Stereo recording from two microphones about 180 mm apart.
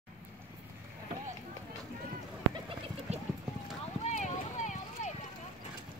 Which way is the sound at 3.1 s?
35° right (ahead or behind).